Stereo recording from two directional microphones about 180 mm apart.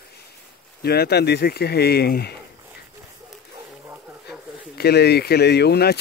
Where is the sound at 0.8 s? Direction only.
60° left (ahead or behind).